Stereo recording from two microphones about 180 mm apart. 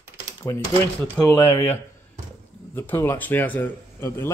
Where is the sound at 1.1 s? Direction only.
15° left (ahead or behind).